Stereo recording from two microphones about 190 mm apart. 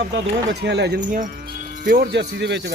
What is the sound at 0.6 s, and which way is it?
Speech, 60° right (ahead or behind).